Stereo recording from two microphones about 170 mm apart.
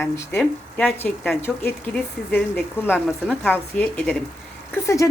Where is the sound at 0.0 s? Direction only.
10° left (ahead or behind).